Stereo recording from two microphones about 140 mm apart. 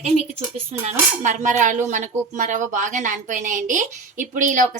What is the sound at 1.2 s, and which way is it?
A woman's voice, 60° right (ahead or behind).